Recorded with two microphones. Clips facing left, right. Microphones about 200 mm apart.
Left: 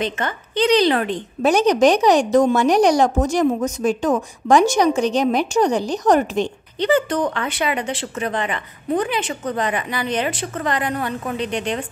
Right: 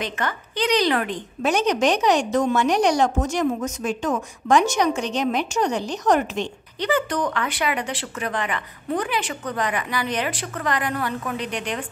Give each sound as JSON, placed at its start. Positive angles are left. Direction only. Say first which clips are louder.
{"t": 0.0, "sound": "a woman's voice", "louder": "left 3 dB", "side_deg": 25}
{"t": 6.8, "sound": "speech", "louder": "left 5 dB", "side_deg": 25}